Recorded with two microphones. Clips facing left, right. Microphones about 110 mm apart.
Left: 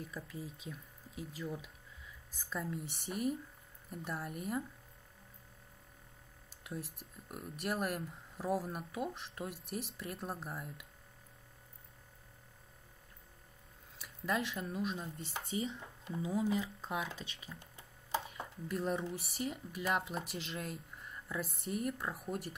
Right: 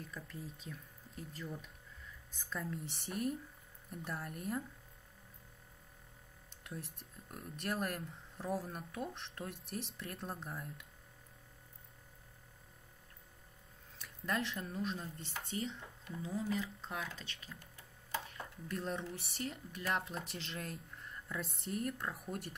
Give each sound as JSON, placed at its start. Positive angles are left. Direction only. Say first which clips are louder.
{"t": 0.0, "sound": "speech", "louder": "left 3 dB", "side_deg": 5}
{"t": 6.5, "sound": "speech", "louder": "left 3 dB", "side_deg": 5}
{"t": 13.9, "sound": "speech", "louder": "left 2 dB", "side_deg": 5}
{"t": 16.0, "sound": "speech", "louder": "left 5 dB", "side_deg": 20}
{"t": 17.6, "sound": "a sound", "louder": "left 1 dB", "side_deg": 20}
{"t": 18.3, "sound": "dishes", "louder": "left 3 dB", "side_deg": 10}
{"t": 19.2, "sound": "speech", "louder": "left 3 dB", "side_deg": 5}